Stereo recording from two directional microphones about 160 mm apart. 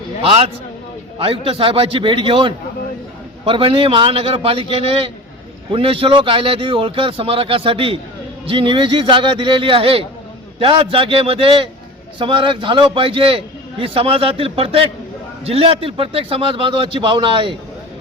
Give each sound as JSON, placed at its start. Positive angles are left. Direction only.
{"t": 0.2, "sound": "a man's voice", "side_deg": -40}